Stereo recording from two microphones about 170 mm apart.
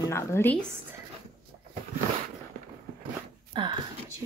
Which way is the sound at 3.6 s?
30° right (ahead or behind).